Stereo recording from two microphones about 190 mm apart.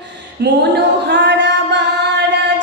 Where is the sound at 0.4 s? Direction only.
60° right (ahead or behind).